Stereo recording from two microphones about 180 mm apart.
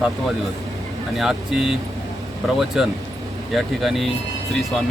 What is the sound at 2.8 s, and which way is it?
Speech, 5° right (ahead or behind).